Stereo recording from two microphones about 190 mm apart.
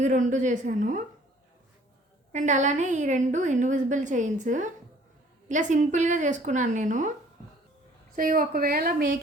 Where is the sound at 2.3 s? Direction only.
40° right (ahead or behind).